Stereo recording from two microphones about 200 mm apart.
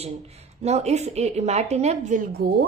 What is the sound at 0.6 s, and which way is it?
A woman's voice, 35° right (ahead or behind).